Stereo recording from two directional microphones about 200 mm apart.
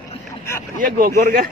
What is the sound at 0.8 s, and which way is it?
Speech, 45° right (ahead or behind).